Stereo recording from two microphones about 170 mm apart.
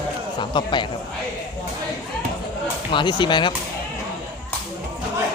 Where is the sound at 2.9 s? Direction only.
25° left (ahead or behind).